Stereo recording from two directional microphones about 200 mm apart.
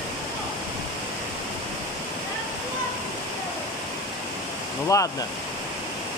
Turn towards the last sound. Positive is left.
turn(degrees=15)  # may be behind; listen again after turning